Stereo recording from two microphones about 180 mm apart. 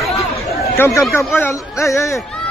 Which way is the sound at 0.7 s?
15° left (ahead or behind).